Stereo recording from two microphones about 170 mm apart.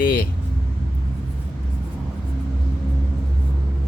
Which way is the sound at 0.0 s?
60° left (ahead or behind).